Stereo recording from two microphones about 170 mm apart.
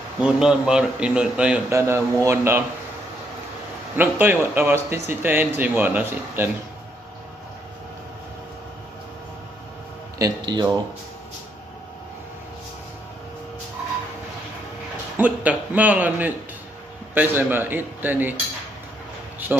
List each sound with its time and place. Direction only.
0.2 s a man's voice: 5° right (ahead or behind)
1.7 s a man's voice: 15° right (ahead or behind)
3.9 s a man's voice: 10° right (ahead or behind)
10.1 s speech: 20° right (ahead or behind)
15.1 s a man's voice: 10° right (ahead or behind)